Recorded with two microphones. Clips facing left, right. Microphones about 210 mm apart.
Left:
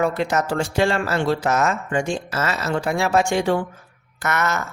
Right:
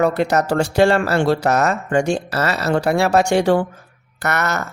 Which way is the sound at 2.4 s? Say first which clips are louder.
Right 3 dB; 35° right (ahead or behind).